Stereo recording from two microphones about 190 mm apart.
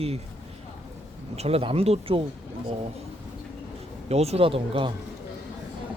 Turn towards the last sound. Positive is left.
turn(degrees=-30)  # may be behind; listen again after turning